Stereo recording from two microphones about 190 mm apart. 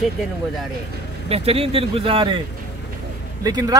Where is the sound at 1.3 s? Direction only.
30° right (ahead or behind).